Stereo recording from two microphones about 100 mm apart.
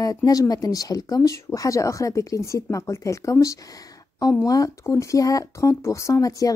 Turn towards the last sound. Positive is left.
turn(degrees=35)  # may be behind; listen again after turning